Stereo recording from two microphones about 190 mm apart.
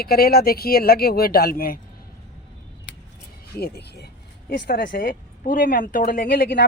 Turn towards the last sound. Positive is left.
turn(degrees=55)  # may be behind; listen again after turning